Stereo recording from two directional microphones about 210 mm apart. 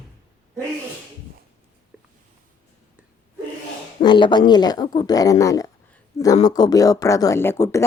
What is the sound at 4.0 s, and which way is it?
Speech, 20° left (ahead or behind).